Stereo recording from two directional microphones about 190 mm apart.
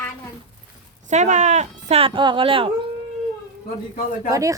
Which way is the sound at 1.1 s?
40° right (ahead or behind).